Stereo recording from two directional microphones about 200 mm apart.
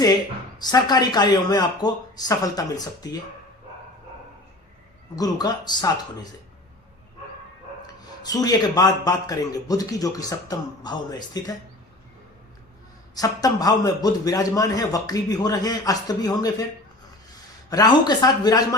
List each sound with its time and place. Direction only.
0.6 s a man's voice: 20° left (ahead or behind)
5.1 s a man's voice: 20° left (ahead or behind)
7.8 s a man's voice: 20° left (ahead or behind)
13.1 s a man's voice: 20° left (ahead or behind)
17.7 s a man's voice: 20° left (ahead or behind)